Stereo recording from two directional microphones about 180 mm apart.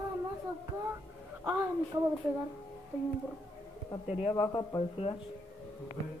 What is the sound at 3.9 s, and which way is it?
Speech, 30° left (ahead or behind).